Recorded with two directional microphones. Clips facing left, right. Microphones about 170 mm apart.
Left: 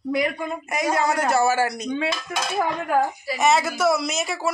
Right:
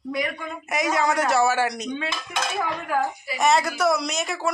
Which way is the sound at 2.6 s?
40° left (ahead or behind).